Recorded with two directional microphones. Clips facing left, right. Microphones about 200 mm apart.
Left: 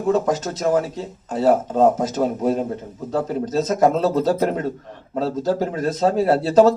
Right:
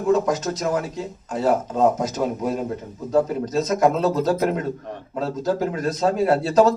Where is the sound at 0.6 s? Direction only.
35° left (ahead or behind).